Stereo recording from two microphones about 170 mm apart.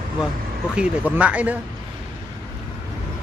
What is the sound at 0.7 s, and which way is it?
Speech, 10° right (ahead or behind).